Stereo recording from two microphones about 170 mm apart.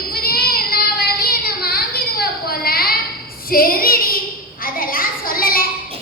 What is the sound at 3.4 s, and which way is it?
Female singing, 60° left (ahead or behind).